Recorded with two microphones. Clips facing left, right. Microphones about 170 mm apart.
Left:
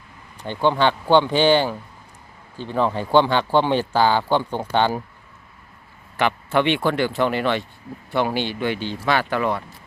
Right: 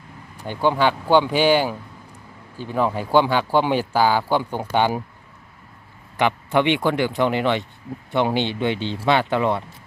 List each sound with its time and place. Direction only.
0.3 s speech: 10° right (ahead or behind)
6.1 s speech: 15° right (ahead or behind)